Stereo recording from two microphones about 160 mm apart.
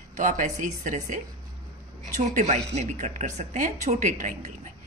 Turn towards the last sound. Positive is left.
turn(degrees=-50)  # may be behind; listen again after turning